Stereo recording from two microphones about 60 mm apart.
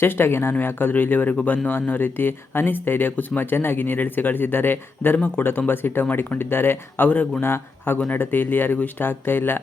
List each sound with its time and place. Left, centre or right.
0.0 s speech: left
7.1 s speech: left
7.4 s speech: left
7.9 s speech: left
8.2 s speech: left